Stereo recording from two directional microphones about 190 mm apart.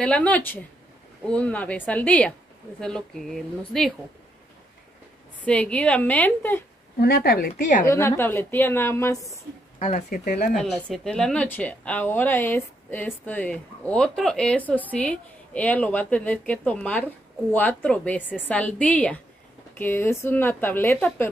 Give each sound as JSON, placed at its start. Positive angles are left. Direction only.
{"t": 0.0, "sound": "speech", "side_deg": 5}
{"t": 5.4, "sound": "speech", "side_deg": 5}
{"t": 7.0, "sound": "speech", "side_deg": 55}
{"t": 7.8, "sound": "speech", "side_deg": 15}
{"t": 9.8, "sound": "speech", "side_deg": 40}
{"t": 10.0, "sound": "speech", "side_deg": 55}
{"t": 10.5, "sound": "speech", "side_deg": 0}